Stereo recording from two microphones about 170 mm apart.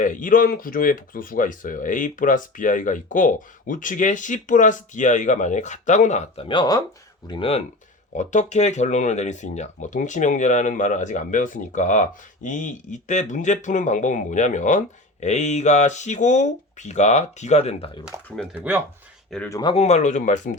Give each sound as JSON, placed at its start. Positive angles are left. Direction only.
{"t": 0.0, "sound": "speech", "side_deg": 50}
{"t": 6.5, "sound": "speech", "side_deg": 25}
{"t": 8.1, "sound": "speech", "side_deg": 45}
{"t": 18.5, "sound": "speech", "side_deg": -10}
{"t": 19.5, "sound": "speech", "side_deg": 20}
{"t": 19.7, "sound": "speech", "side_deg": 40}